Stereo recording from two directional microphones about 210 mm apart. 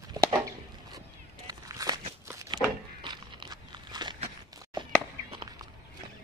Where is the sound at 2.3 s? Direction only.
15° right (ahead or behind).